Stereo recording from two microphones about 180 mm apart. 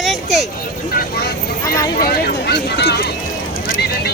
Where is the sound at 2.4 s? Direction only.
65° left (ahead or behind).